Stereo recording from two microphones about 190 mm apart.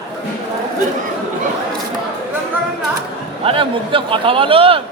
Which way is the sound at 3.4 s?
30° right (ahead or behind).